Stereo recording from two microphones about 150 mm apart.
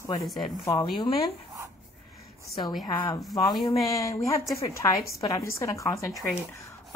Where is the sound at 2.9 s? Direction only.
25° left (ahead or behind).